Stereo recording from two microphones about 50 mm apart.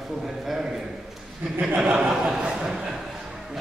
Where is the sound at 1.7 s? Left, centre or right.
Right.